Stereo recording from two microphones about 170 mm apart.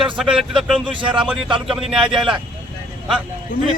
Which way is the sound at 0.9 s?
30° right (ahead or behind).